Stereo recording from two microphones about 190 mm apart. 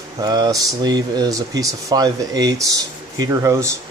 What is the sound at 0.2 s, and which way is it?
Speech, 20° right (ahead or behind).